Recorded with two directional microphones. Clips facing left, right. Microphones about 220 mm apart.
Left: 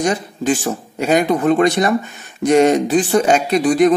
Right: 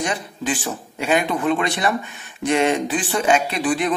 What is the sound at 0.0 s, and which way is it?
Speech, 40° left (ahead or behind).